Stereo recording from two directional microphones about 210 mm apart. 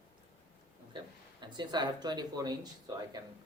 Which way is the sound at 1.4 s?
20° right (ahead or behind).